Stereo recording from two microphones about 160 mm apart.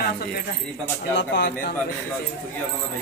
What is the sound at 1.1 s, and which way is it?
Speech, 90° left.